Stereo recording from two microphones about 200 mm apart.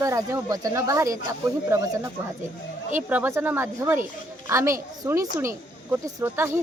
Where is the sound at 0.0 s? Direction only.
15° right (ahead or behind).